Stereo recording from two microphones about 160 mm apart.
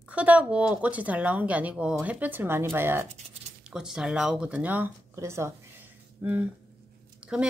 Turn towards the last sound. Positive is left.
turn(degrees=-5)  # may be behind; listen again after turning